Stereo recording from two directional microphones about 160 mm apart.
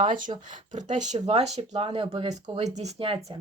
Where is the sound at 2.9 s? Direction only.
35° right (ahead or behind).